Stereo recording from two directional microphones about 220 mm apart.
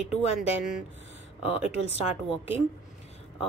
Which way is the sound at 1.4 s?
25° left (ahead or behind).